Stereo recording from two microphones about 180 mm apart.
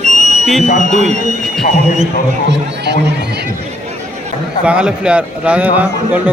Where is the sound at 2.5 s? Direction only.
70° right (ahead or behind).